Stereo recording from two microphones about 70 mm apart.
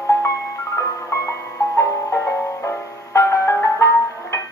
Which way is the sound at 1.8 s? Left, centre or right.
Left.